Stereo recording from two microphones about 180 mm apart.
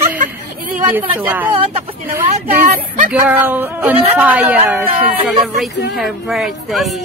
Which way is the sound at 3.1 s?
10° right (ahead or behind).